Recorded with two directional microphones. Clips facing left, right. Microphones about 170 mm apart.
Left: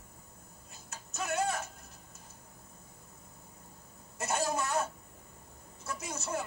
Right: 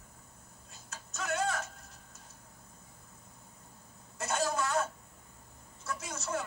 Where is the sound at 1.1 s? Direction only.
20° left (ahead or behind).